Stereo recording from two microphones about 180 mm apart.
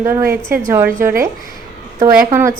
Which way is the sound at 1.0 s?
15° right (ahead or behind).